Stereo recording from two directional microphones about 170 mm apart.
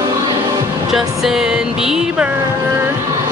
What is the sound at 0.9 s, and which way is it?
Speech, centre (ahead or behind).